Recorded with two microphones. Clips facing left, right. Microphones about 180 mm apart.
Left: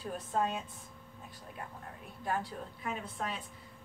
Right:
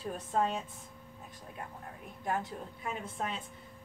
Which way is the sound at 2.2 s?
20° right (ahead or behind).